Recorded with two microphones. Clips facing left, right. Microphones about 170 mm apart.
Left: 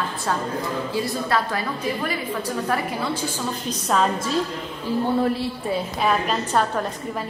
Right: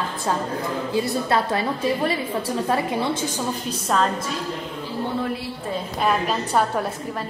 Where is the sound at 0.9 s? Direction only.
25° right (ahead or behind).